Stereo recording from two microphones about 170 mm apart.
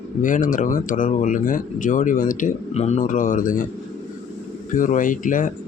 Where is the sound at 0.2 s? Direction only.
50° left (ahead or behind).